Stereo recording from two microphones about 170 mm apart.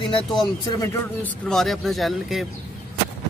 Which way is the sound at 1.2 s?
5° left (ahead or behind).